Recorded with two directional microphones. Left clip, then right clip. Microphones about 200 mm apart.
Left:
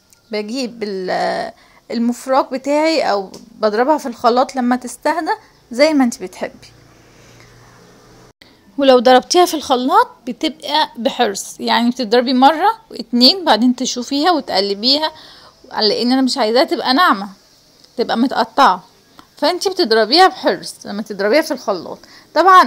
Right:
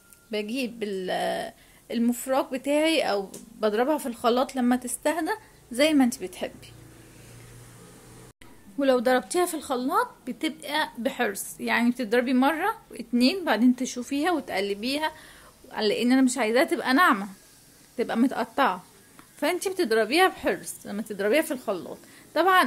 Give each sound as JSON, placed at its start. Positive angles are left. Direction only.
{"t": 0.3, "sound": "a woman's voice", "side_deg": 15}
{"t": 8.7, "sound": "a woman's voice", "side_deg": 30}
{"t": 15.7, "sound": "speech", "side_deg": 0}
{"t": 16.5, "sound": "a woman's voice", "side_deg": 20}
{"t": 19.4, "sound": "a woman's voice", "side_deg": 20}
{"t": 20.6, "sound": "speech", "side_deg": 0}
{"t": 21.0, "sound": "a woman's voice", "side_deg": 15}